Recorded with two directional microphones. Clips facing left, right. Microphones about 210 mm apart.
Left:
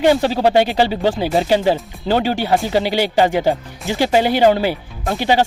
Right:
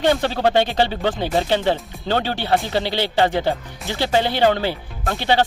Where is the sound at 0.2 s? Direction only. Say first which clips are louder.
Left 4 dB; 35° left (ahead or behind).